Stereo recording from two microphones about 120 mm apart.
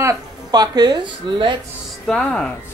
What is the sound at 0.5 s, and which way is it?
Speech, 35° right (ahead or behind).